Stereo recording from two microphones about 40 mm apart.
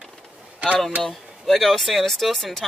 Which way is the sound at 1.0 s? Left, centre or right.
Centre.